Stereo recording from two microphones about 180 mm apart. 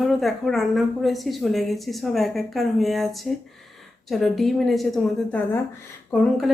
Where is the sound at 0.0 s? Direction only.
Centre (ahead or behind).